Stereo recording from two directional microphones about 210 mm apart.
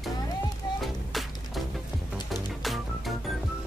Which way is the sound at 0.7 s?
Centre (ahead or behind).